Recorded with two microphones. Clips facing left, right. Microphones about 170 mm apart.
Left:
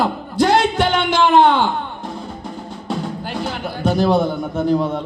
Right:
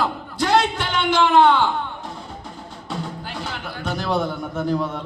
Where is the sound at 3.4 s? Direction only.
35° left (ahead or behind).